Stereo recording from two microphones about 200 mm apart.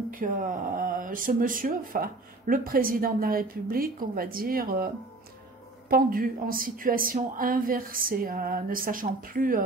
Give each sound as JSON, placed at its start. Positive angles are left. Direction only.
{"t": 0.1, "sound": "speech", "side_deg": -40}